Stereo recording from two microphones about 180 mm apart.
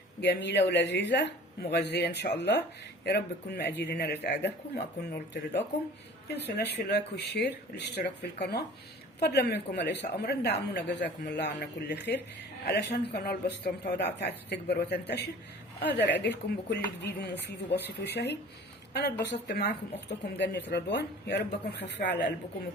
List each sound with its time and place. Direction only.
0.2 s speech: 70° left (ahead or behind)